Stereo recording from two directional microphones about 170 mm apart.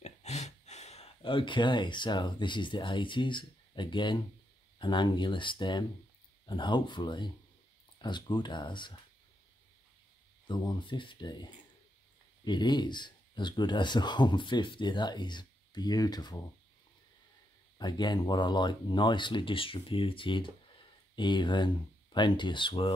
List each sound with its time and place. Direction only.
0.0 s speech: 40° left (ahead or behind)
10.4 s speech: 25° left (ahead or behind)
17.7 s speech: 25° left (ahead or behind)